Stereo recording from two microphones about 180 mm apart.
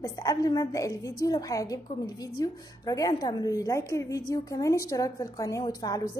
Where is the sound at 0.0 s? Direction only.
20° left (ahead or behind).